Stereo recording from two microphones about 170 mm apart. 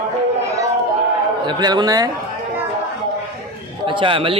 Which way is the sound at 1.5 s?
25° right (ahead or behind).